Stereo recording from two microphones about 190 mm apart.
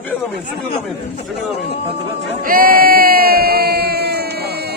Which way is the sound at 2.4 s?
50° right (ahead or behind).